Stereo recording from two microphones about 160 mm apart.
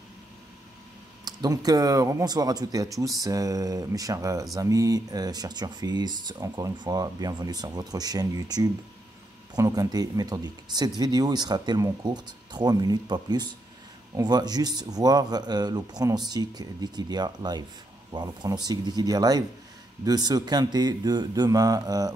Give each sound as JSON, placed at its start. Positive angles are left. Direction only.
{"t": 1.2, "sound": "speech", "side_deg": -25}